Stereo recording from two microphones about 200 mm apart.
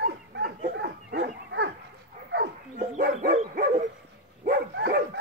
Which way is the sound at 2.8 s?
45° right (ahead or behind).